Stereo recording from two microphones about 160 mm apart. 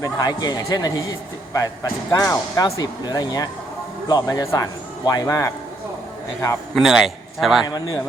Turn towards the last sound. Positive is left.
turn(degrees=25)  # may be behind; listen again after turning